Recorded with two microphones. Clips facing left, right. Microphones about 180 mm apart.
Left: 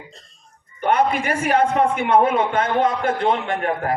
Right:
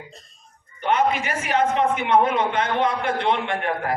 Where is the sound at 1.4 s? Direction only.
50° left (ahead or behind).